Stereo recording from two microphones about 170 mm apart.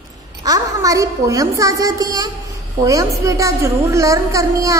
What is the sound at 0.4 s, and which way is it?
A woman's voice, 20° right (ahead or behind).